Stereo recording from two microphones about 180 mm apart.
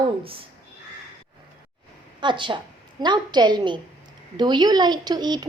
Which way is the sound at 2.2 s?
25° right (ahead or behind).